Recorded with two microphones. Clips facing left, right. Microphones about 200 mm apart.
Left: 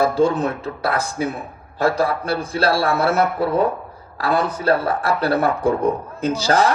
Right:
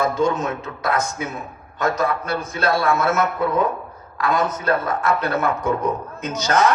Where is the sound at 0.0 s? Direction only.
35° left (ahead or behind).